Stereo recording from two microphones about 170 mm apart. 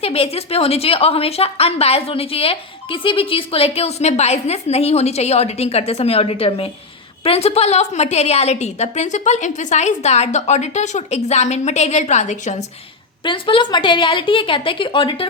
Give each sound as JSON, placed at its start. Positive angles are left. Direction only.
{"t": 0.0, "sound": "a woman's voice", "side_deg": 35}
{"t": 13.2, "sound": "a woman's voice", "side_deg": 30}